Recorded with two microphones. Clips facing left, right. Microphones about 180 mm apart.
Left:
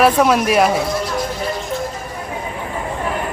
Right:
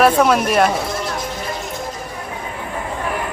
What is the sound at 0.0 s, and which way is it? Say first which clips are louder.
Speech: even; centre (ahead or behind).